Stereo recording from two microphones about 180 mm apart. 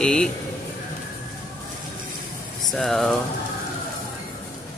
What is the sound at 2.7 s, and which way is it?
Speech, centre (ahead or behind).